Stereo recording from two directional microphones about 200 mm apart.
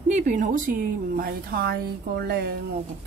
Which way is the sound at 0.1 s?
40° right (ahead or behind).